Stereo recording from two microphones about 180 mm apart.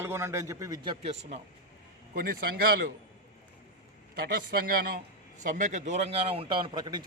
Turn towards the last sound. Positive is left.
turn(degrees=-25)  # may be behind; listen again after turning